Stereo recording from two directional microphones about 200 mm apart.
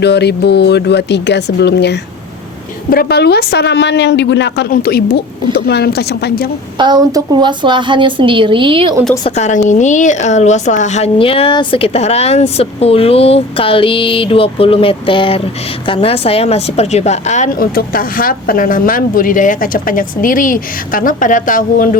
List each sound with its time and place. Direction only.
0.0 s a woman's voice: 55° left (ahead or behind)
6.7 s a woman's voice: 20° right (ahead or behind)
9.3 s a woman's voice: 35° left (ahead or behind)